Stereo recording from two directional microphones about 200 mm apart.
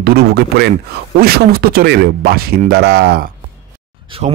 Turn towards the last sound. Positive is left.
turn(degrees=-35)  # may be behind; listen again after turning